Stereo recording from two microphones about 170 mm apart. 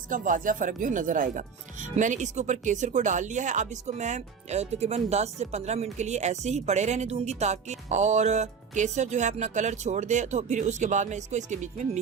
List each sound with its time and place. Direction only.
0.1 s speech: 50° right (ahead or behind)